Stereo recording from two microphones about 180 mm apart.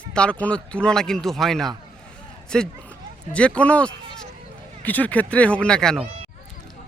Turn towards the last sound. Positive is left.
turn(degrees=5)  # may be behind; listen again after turning